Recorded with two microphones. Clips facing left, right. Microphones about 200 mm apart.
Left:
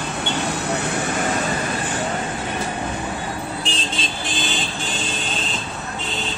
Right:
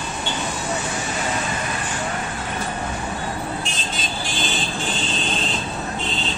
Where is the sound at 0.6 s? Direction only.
65° left (ahead or behind).